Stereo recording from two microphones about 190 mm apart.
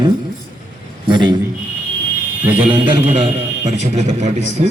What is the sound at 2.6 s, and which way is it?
A man's voice, 25° right (ahead or behind).